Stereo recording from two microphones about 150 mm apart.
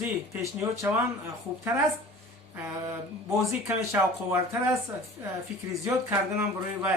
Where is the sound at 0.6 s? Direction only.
20° right (ahead or behind).